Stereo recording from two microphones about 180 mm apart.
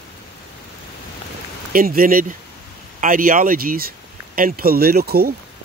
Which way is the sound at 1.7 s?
50° right (ahead or behind).